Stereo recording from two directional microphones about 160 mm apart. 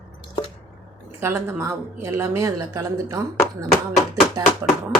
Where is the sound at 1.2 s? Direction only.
15° right (ahead or behind).